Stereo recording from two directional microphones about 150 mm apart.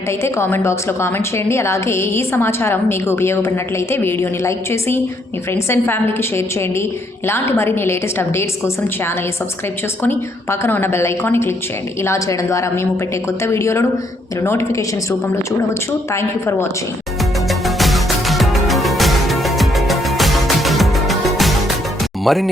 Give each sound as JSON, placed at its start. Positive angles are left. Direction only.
{"t": 0.2, "sound": "a woman's voice", "side_deg": 15}
{"t": 10.0, "sound": "a woman's voice", "side_deg": 15}
{"t": 16.1, "sound": "a woman's voice", "side_deg": 20}
{"t": 17.5, "sound": "music", "side_deg": 0}
{"t": 22.2, "sound": "speech", "side_deg": 0}